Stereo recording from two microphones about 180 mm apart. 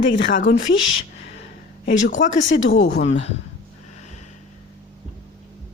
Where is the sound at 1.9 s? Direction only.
45° left (ahead or behind).